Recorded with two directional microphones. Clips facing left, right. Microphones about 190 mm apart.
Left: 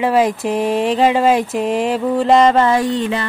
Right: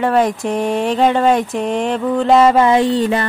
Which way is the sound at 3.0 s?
40° right (ahead or behind).